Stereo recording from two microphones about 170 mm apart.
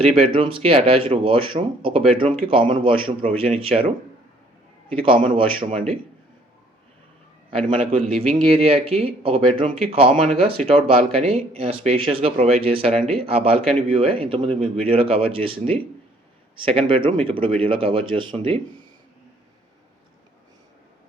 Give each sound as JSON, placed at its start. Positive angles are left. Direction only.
{"t": 0.0, "sound": "speech", "side_deg": -35}
{"t": 4.9, "sound": "speech", "side_deg": -30}
{"t": 7.5, "sound": "speech", "side_deg": -35}